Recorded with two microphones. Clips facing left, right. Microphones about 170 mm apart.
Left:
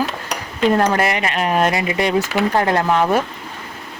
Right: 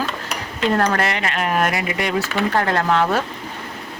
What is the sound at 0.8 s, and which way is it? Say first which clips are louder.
Speech: left 3 dB; 15° left (ahead or behind).